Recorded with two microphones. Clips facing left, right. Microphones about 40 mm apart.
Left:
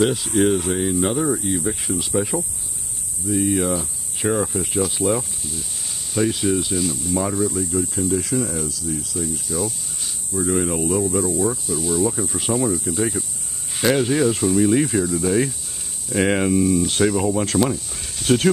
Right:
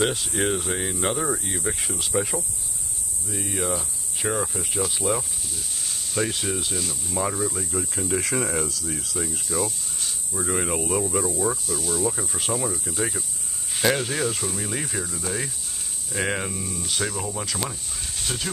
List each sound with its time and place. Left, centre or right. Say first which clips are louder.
0.0 s speech: left 6 dB; centre
8.2 s speech: left 3 dB; right
9.1 s speech: left 2 dB; right
9.5 s speech: left 2 dB; centre